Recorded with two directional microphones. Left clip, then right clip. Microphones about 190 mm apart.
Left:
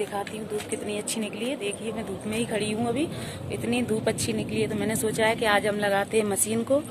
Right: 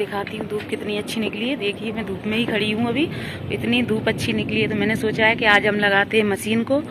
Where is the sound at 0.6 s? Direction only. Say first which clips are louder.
Right 5 dB; 10° left (ahead or behind).